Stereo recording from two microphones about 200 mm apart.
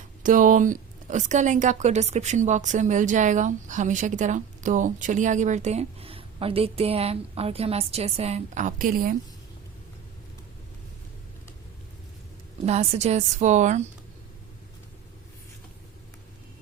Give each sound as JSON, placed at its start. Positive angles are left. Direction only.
{"t": 0.2, "sound": "a woman's voice", "side_deg": -40}
{"t": 12.6, "sound": "a woman's voice", "side_deg": -30}